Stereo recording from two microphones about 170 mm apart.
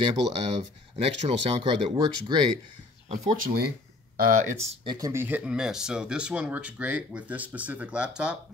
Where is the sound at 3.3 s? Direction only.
60° right (ahead or behind).